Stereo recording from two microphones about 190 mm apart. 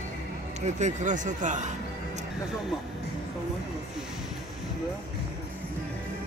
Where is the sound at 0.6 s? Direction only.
40° right (ahead or behind).